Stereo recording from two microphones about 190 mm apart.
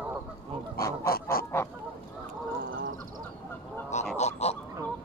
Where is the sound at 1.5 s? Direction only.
15° left (ahead or behind).